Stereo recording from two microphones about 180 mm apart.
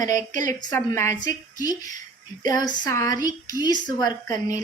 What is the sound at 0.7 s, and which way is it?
A woman's voice, 15° left (ahead or behind).